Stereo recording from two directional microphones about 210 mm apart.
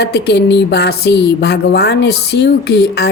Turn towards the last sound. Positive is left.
turn(degrees=55)  # may be behind; listen again after turning